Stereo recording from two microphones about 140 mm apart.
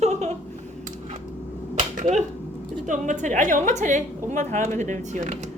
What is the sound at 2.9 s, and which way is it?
A woman's voice, 65° right (ahead or behind).